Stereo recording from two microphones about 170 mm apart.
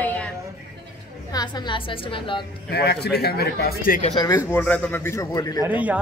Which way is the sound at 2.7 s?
75° left (ahead or behind).